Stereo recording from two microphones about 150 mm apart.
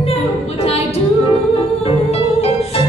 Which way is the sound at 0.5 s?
40° left (ahead or behind).